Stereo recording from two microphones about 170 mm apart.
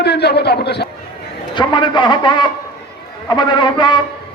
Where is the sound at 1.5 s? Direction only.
25° left (ahead or behind).